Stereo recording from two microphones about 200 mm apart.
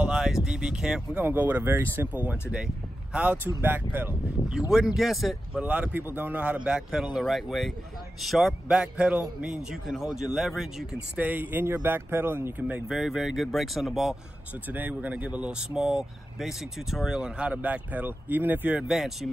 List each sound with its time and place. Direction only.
0.0 s speech: 5° right (ahead or behind)